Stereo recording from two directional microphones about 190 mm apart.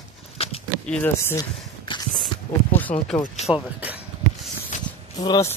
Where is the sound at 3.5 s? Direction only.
10° right (ahead or behind).